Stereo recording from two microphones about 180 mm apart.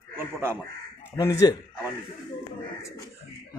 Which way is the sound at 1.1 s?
15° left (ahead or behind).